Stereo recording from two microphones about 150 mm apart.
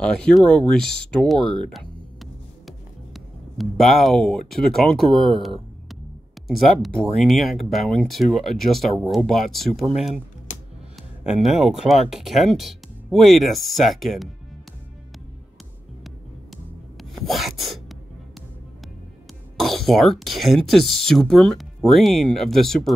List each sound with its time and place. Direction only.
0.0 s speech: 5° left (ahead or behind)
1.6 s music: centre (ahead or behind)
6.4 s speech: centre (ahead or behind)
11.4 s speech: centre (ahead or behind)
17.1 s rub: centre (ahead or behind)
19.5 s speech: centre (ahead or behind)